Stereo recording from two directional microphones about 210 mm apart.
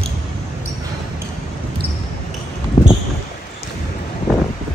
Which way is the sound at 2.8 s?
20° left (ahead or behind).